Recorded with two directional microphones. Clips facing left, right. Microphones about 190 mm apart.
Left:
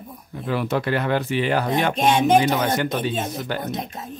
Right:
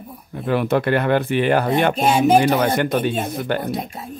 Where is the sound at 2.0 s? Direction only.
10° right (ahead or behind).